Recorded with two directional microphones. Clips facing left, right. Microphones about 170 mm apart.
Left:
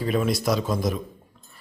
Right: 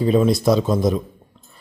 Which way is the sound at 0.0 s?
25° right (ahead or behind).